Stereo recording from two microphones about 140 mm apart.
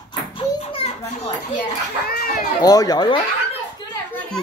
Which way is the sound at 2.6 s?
25° left (ahead or behind).